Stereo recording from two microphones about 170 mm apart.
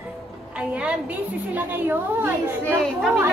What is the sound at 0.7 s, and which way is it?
A child's voice, 5° right (ahead or behind).